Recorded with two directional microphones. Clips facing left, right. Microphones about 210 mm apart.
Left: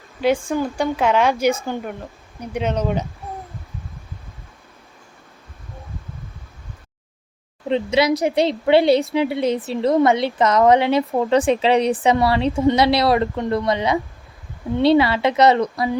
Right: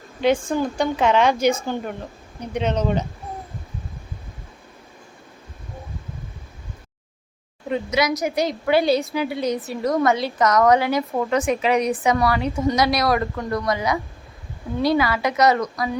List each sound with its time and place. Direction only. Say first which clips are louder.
0.2 s speech: even; 5° left (ahead or behind)
7.7 s speech: left 4 dB; 30° left (ahead or behind)